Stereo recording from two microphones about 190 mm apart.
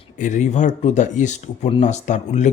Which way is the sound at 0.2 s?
40° left (ahead or behind).